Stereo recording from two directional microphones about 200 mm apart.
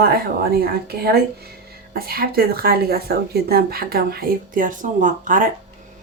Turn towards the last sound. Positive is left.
turn(degrees=-40)  # may be behind; listen again after turning